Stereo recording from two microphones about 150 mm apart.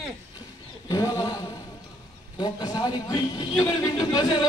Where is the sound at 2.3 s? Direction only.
25° left (ahead or behind).